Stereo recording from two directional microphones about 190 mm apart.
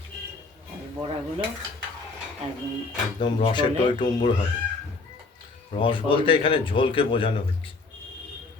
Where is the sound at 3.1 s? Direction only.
25° left (ahead or behind).